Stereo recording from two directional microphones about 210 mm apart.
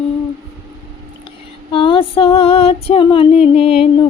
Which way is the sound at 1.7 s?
25° left (ahead or behind).